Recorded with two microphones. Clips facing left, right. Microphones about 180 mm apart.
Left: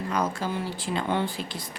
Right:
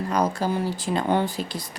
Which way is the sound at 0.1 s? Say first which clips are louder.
Right 4 dB; 40° right (ahead or behind).